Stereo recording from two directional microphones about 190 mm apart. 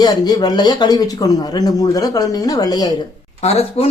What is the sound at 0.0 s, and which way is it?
Speech, 20° left (ahead or behind).